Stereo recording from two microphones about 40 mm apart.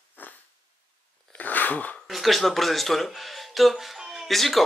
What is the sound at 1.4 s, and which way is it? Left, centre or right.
Sneeze, left.